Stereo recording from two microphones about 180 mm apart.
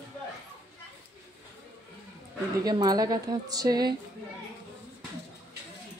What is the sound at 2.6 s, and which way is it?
A woman's voice, 20° right (ahead or behind).